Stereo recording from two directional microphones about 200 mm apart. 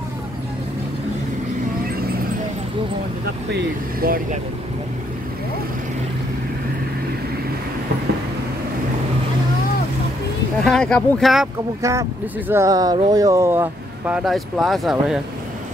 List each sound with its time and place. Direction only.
3.5 s speech: 45° right (ahead or behind)
10.6 s speech: 5° left (ahead or behind)
11.8 s speech: 15° right (ahead or behind)